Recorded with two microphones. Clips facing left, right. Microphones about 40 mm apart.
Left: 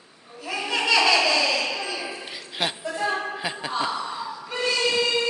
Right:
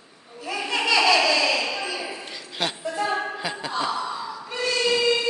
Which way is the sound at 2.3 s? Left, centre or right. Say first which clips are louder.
Left 1 dB; centre.